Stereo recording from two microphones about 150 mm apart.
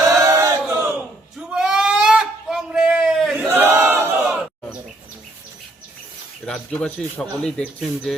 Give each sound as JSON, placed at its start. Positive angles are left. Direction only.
{"t": 0.0, "sound": "battle cry", "side_deg": -20}
{"t": 1.4, "sound": "a sound", "side_deg": -5}
{"t": 3.3, "sound": "battle cry", "side_deg": -15}
{"t": 4.2, "sound": "crowd", "side_deg": -5}
{"t": 6.4, "sound": "speech", "side_deg": 5}